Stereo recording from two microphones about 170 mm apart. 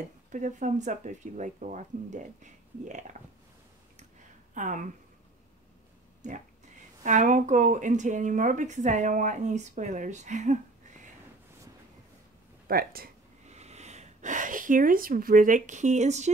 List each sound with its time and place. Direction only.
0.3 s speech: 45° right (ahead or behind)
4.6 s speech: 50° right (ahead or behind)
6.2 s speech: 45° right (ahead or behind)
12.6 s speech: 60° right (ahead or behind)
13.5 s speech: 40° right (ahead or behind)